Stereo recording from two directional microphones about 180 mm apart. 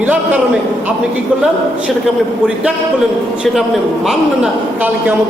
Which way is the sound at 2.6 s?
5° right (ahead or behind).